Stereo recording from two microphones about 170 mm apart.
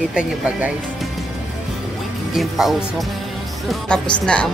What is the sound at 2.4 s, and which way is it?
Speech, centre (ahead or behind).